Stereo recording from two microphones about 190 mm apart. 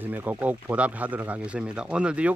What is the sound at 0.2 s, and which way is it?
Speech, 10° right (ahead or behind).